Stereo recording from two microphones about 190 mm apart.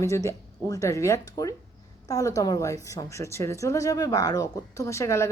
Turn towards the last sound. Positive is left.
turn(degrees=15)  # may be behind; listen again after turning